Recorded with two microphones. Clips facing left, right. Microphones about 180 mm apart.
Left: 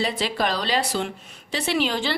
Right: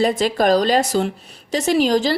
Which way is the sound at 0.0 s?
45° right (ahead or behind).